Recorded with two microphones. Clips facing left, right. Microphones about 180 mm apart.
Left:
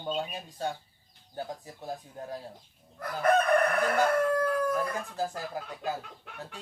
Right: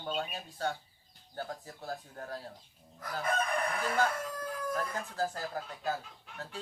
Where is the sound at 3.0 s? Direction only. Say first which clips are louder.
Left 8 dB; 65° left (ahead or behind).